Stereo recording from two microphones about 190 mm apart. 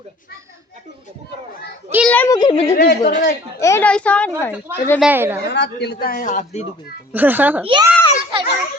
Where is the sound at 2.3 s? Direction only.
25° left (ahead or behind).